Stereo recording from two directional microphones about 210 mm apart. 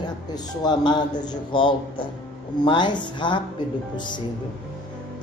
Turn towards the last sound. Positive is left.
turn(degrees=20)  # may be behind; listen again after turning